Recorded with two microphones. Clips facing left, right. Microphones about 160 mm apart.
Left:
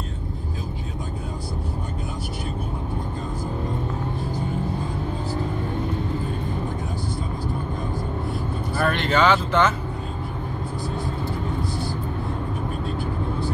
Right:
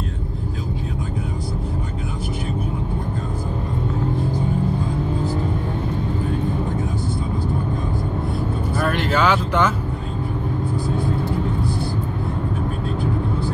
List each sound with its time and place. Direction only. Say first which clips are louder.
8.7 s vehicle: even; 5° right (ahead or behind)